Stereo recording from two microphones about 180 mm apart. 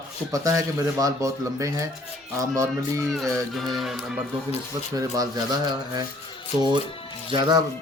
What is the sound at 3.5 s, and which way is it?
Speech, centre (ahead or behind).